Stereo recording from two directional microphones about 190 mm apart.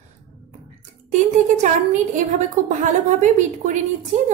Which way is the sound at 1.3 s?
40° right (ahead or behind).